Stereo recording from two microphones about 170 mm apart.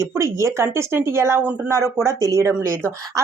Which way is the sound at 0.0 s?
15° right (ahead or behind).